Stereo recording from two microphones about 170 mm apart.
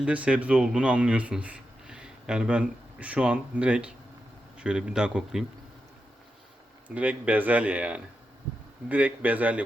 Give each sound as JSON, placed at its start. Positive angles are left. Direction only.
{"t": 0.0, "sound": "a man's voice", "side_deg": -5}
{"t": 6.8, "sound": "speech", "side_deg": -10}